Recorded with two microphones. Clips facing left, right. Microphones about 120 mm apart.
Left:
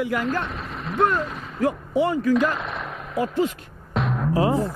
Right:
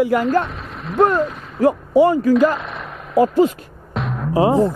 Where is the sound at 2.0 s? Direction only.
40° right (ahead or behind).